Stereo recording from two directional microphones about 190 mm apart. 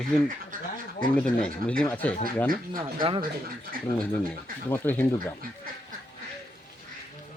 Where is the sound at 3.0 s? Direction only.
25° right (ahead or behind).